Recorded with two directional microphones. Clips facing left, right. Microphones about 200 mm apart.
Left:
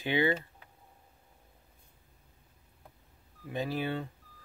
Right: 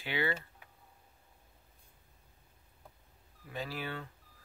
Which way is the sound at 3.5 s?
20° left (ahead or behind).